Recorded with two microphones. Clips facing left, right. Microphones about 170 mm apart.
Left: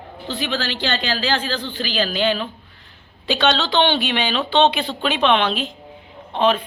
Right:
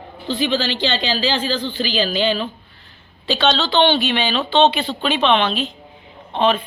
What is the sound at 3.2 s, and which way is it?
Speech, 10° left (ahead or behind).